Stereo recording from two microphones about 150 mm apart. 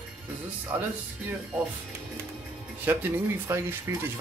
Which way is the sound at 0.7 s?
15° right (ahead or behind).